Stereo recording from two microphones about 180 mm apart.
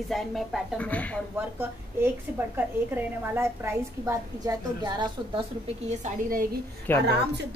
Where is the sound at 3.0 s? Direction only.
15° right (ahead or behind).